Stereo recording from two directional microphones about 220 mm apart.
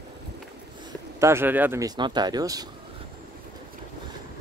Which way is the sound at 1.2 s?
10° right (ahead or behind).